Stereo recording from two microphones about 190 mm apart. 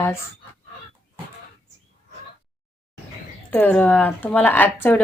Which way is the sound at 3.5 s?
10° left (ahead or behind).